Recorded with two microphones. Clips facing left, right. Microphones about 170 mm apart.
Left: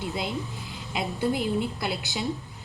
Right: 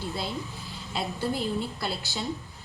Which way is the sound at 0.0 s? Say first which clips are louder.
Left 2 dB; 20° left (ahead or behind).